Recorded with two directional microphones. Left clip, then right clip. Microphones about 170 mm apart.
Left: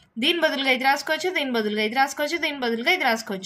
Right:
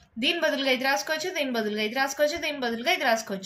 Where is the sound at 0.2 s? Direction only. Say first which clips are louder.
Left 3 dB; 40° left (ahead or behind).